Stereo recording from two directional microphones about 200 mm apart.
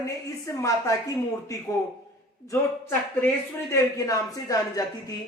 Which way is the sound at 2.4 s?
10° left (ahead or behind).